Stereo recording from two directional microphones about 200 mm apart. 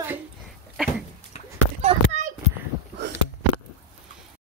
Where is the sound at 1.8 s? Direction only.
35° right (ahead or behind).